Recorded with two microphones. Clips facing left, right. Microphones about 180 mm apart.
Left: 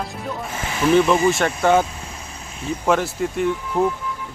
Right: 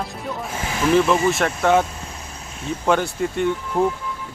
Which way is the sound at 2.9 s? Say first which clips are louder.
Even; centre (ahead or behind).